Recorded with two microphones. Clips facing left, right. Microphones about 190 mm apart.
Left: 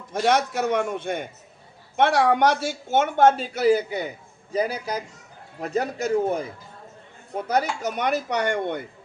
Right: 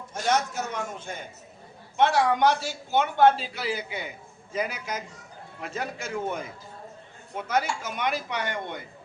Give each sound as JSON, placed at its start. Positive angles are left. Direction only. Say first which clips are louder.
{"t": 0.1, "sound": "a man's voice", "louder": "left 5 dB", "side_deg": 60}